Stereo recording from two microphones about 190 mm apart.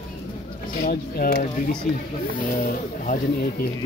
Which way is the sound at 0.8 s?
50° left (ahead or behind).